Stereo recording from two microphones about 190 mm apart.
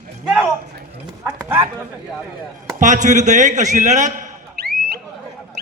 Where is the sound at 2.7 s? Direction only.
40° right (ahead or behind).